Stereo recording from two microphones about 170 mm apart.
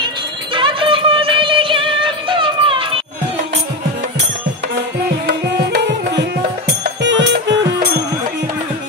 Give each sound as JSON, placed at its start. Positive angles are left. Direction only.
{"t": 0.6, "sound": "music", "side_deg": -30}
{"t": 5.2, "sound": "music", "side_deg": -70}